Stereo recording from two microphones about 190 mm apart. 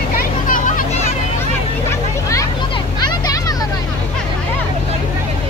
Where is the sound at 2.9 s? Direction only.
20° left (ahead or behind).